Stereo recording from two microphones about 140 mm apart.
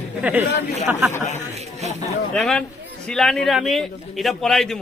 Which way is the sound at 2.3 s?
5° left (ahead or behind).